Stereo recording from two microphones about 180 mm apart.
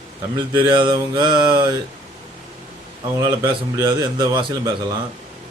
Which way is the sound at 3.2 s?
25° right (ahead or behind).